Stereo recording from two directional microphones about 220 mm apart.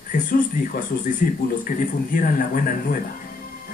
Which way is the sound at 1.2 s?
40° left (ahead or behind).